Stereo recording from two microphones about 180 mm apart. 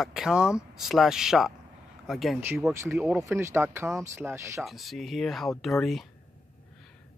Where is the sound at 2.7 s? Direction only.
15° right (ahead or behind).